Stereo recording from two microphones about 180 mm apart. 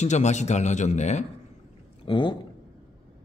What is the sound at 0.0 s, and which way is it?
A man's voice, 40° left (ahead or behind).